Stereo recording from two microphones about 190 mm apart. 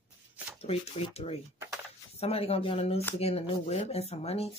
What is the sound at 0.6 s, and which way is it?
Speech, 30° left (ahead or behind).